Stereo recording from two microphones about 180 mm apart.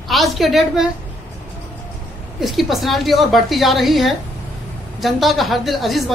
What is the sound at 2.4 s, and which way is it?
Speech, centre (ahead or behind).